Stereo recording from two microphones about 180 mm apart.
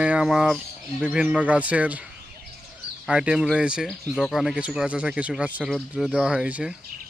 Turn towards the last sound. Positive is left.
turn(degrees=-5)  # may be behind; listen again after turning